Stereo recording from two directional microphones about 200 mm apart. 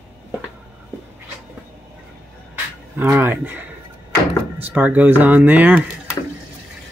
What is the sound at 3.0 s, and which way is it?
Speech, 10° right (ahead or behind).